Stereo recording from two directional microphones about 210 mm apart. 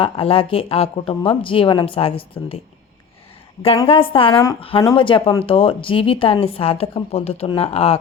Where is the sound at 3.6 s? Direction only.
25° left (ahead or behind).